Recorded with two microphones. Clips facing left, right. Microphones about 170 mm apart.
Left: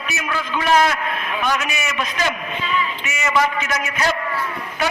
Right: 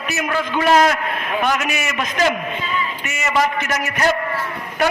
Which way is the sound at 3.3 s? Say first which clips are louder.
Right 1 dB; 45° right (ahead or behind).